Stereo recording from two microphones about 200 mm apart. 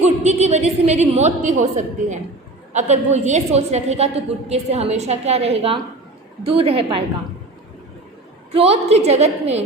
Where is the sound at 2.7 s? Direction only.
35° right (ahead or behind).